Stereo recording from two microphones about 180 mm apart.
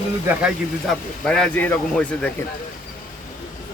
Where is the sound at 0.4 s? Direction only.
5° left (ahead or behind).